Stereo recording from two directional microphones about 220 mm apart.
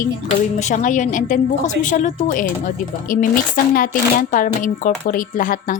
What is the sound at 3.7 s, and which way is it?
Speech, 40° left (ahead or behind).